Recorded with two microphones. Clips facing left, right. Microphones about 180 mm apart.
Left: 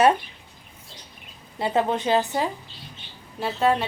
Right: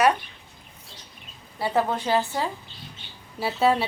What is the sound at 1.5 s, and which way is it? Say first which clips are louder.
Speech: left 1 dB; 20° left (ahead or behind).